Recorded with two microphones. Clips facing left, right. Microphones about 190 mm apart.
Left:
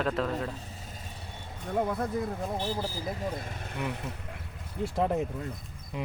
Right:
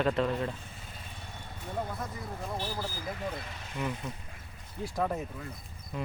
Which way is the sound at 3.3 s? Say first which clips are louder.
Left 2 dB; 45° left (ahead or behind).